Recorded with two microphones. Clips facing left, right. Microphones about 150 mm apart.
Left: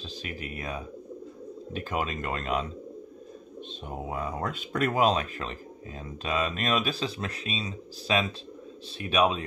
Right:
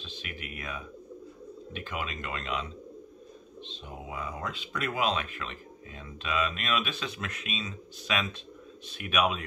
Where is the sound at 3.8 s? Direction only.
45° left (ahead or behind).